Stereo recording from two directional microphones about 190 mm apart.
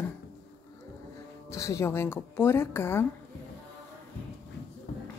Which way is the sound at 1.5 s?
15° left (ahead or behind).